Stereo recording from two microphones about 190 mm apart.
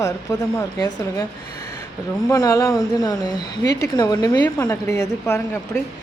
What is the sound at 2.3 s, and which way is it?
A man's voice, 15° left (ahead or behind).